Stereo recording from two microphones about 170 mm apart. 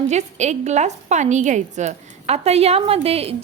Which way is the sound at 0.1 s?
40° right (ahead or behind).